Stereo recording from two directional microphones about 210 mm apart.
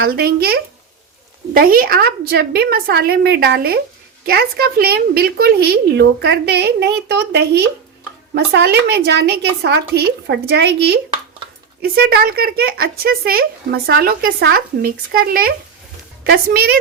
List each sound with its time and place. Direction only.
0.0 s speech: 45° right (ahead or behind)